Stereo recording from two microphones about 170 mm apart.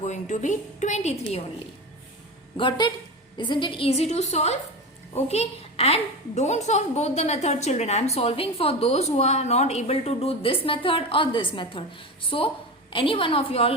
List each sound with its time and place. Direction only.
0.0 s a woman's voice: 45° left (ahead or behind)
2.6 s a woman's voice: 25° left (ahead or behind)